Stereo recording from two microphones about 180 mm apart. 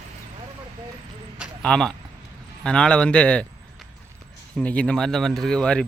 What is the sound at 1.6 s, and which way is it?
Speech, 5° left (ahead or behind).